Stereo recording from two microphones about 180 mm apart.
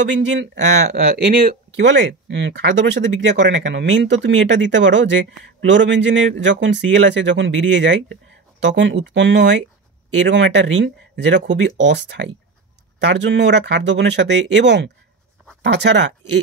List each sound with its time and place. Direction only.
0.1 s speech: 85° right
0.9 s speech: 60° right (ahead or behind); by 9.6 s 75° right (ahead or behind)
10.1 s speech: 85° right